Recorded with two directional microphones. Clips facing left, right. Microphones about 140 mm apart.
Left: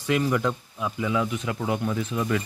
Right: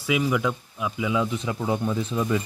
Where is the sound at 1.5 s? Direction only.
20° right (ahead or behind).